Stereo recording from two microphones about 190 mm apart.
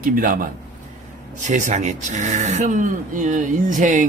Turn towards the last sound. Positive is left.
turn(degrees=-40)  # may be behind; listen again after turning